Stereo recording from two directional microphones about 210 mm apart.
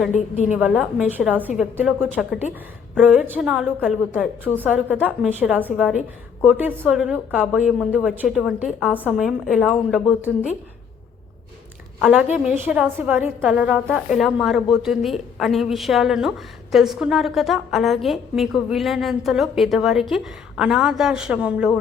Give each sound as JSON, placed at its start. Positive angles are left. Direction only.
{"t": 0.1, "sound": "a woman's voice", "side_deg": 35}
{"t": 0.6, "sound": "a woman's voice", "side_deg": -5}
{"t": 11.9, "sound": "a woman's voice", "side_deg": -5}